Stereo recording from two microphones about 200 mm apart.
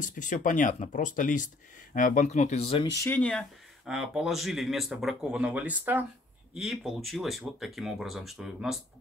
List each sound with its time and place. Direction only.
0.0 s speech: 40° left (ahead or behind)
3.0 s speech: 10° left (ahead or behind)